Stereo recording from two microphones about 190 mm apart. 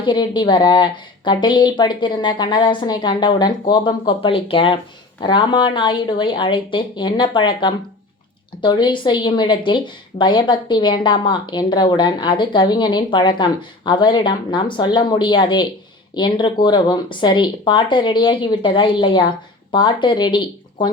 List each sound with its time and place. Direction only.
0.0 s a woman's voice: 25° left (ahead or behind)